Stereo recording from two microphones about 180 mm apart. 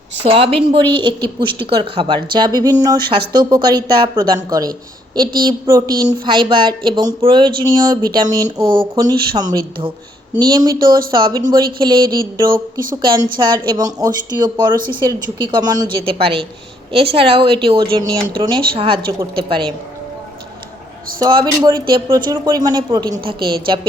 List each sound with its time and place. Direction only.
0.2 s a woman's voice: 30° right (ahead or behind)
21.2 s speech: 25° right (ahead or behind)